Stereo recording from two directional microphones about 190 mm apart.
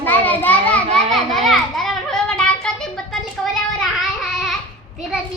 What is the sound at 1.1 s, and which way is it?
Child singing, centre (ahead or behind).